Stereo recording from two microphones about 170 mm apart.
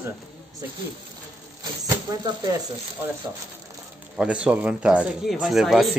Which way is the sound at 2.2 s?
20° right (ahead or behind).